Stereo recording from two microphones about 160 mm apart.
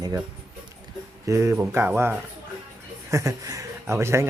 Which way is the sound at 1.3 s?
20° right (ahead or behind).